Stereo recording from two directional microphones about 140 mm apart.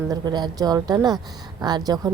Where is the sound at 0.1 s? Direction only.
30° right (ahead or behind).